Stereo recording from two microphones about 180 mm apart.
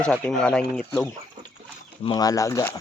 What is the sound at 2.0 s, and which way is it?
Speech, 20° left (ahead or behind).